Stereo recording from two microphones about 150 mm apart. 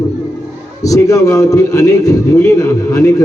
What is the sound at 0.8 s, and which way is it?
A man's voice, 20° left (ahead or behind).